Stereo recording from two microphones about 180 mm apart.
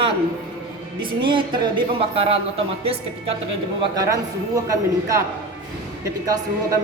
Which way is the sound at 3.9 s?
20° right (ahead or behind).